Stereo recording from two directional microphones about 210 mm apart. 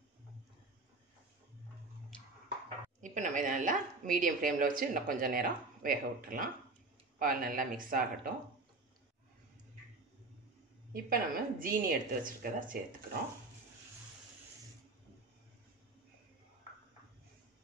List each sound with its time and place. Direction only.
3.0 s a woman's voice: 35° right (ahead or behind)
10.9 s a woman's voice: 45° right (ahead or behind)